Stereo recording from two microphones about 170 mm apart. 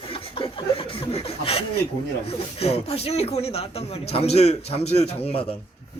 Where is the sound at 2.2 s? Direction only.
35° left (ahead or behind).